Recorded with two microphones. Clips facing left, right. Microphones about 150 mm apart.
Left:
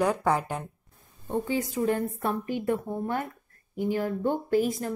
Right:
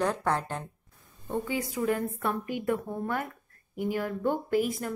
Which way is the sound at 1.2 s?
30° left (ahead or behind).